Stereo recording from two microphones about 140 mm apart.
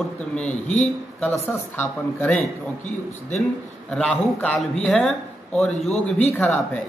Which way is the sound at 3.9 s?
10° left (ahead or behind).